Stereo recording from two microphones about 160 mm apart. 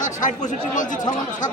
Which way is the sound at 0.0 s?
50° left (ahead or behind).